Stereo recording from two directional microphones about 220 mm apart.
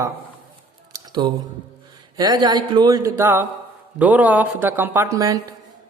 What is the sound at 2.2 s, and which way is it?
Speech, 20° right (ahead or behind).